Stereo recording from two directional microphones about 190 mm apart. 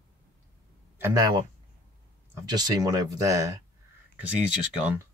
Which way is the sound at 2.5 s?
20° right (ahead or behind).